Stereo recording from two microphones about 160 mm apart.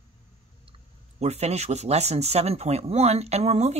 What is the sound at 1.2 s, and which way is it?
Speech, 45° right (ahead or behind).